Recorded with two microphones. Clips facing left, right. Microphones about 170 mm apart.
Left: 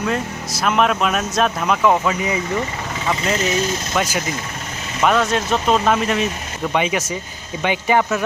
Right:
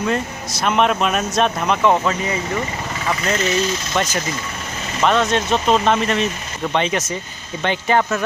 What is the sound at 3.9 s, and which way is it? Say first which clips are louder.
Speech: left 1 dB; 10° left (ahead or behind).